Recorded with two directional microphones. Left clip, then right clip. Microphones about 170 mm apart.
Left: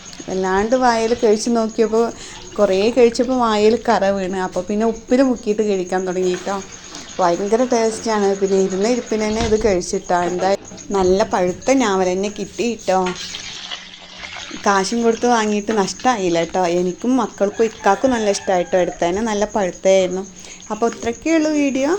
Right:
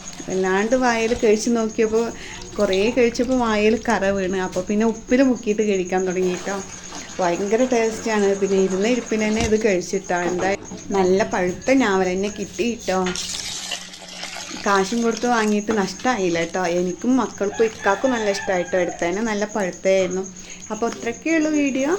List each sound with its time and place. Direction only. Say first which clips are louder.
0.3 s a woman's voice: left 2 dB; 10° left (ahead or behind)
14.6 s speech: left 3 dB; 30° left (ahead or behind)